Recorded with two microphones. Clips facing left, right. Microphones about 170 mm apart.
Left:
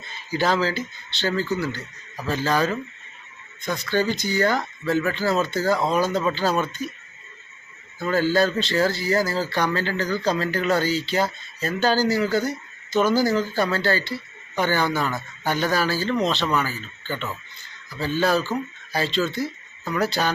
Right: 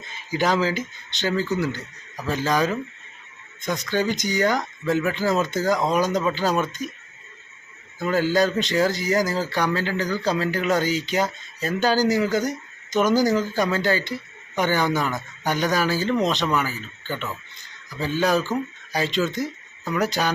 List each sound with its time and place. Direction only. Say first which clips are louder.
0.3 s speech: even; 15° right (ahead or behind)
7.9 s speech: even; 15° right (ahead or behind)